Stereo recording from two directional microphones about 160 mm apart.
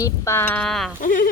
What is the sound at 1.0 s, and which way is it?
Speech, 55° left (ahead or behind).